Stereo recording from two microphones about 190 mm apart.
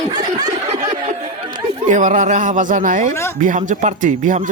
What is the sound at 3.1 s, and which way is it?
Speech, 15° left (ahead or behind).